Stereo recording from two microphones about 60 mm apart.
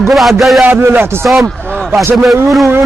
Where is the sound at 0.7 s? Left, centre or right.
Right.